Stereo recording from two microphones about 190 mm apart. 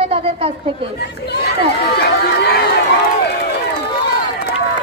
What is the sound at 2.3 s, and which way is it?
Run, 60° left (ahead or behind).